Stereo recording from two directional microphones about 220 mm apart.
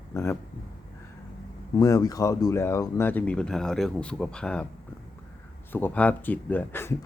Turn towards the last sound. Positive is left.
turn(degrees=10)  # may be behind; listen again after turning